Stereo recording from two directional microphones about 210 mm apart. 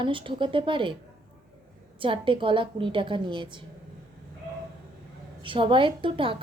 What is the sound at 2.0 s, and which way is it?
Speech, 25° right (ahead or behind).